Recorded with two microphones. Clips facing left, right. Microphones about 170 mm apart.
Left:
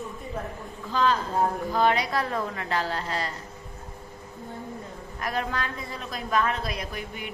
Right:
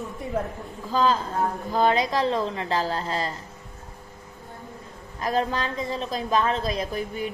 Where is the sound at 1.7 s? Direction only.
25° right (ahead or behind).